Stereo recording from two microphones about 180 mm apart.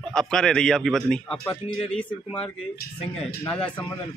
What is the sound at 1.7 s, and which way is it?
Speech, 30° left (ahead or behind).